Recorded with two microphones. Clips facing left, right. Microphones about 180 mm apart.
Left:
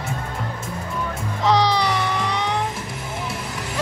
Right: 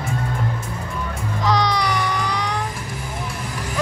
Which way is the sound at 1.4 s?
30° left (ahead or behind).